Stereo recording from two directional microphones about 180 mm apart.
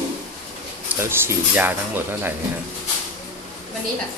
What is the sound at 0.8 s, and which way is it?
Speech, 15° right (ahead or behind).